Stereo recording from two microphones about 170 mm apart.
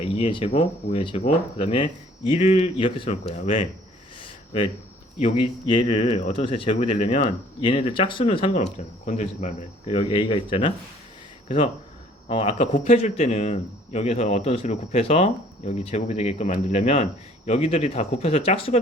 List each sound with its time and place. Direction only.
0.0 s a man's voice: 35° left (ahead or behind)
4.2 s a sound: 30° left (ahead or behind)
5.2 s a man's voice: 30° left (ahead or behind)
12.7 s a man's voice: 50° left (ahead or behind)
13.0 s a man's voice: 35° left (ahead or behind)